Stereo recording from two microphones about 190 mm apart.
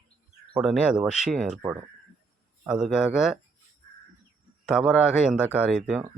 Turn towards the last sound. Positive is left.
turn(degrees=-5)  # may be behind; listen again after turning